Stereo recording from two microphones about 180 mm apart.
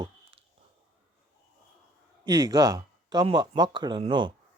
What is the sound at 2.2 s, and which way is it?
Speech, 20° right (ahead or behind).